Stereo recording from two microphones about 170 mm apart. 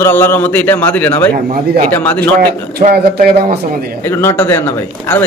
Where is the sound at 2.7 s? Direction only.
65° right (ahead or behind).